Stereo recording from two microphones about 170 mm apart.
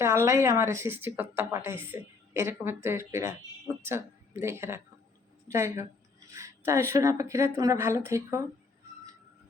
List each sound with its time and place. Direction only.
0.0 s speech: 15° right (ahead or behind)